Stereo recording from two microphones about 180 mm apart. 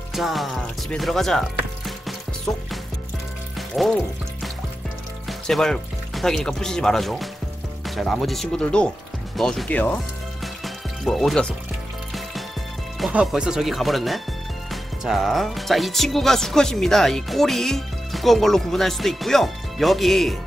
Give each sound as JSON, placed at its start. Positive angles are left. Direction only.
{"t": 0.1, "sound": "speech", "side_deg": 0}
{"t": 3.5, "sound": "music", "side_deg": 0}
{"t": 5.5, "sound": "speech", "side_deg": 0}
{"t": 10.4, "sound": "music", "side_deg": 0}
{"t": 13.0, "sound": "speech", "side_deg": -5}